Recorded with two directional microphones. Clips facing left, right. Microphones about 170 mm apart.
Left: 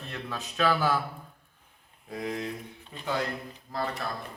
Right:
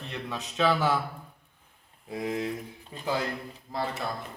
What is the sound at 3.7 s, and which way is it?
Speech, 25° right (ahead or behind).